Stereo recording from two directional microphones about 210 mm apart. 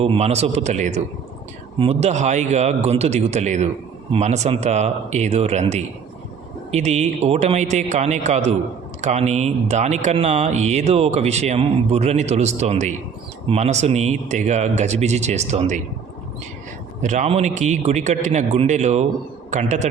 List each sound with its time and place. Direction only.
0.0 s speech: 30° right (ahead or behind)
17.0 s speech: 35° right (ahead or behind)